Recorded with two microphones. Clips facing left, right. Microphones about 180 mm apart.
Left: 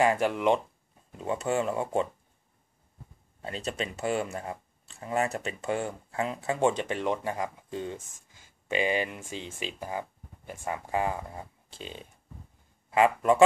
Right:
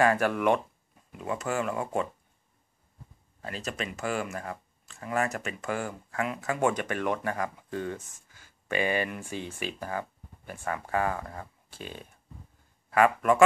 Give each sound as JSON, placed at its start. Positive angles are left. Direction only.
{"t": 0.0, "sound": "speech", "side_deg": 20}
{"t": 3.3, "sound": "speech", "side_deg": 25}